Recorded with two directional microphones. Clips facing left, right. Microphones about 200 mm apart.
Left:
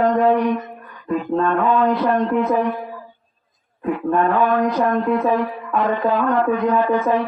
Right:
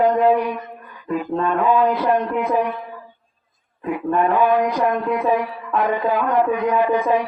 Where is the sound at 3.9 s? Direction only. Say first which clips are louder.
Even; 10° right (ahead or behind).